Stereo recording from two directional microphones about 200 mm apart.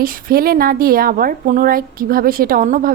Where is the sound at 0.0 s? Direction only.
45° right (ahead or behind).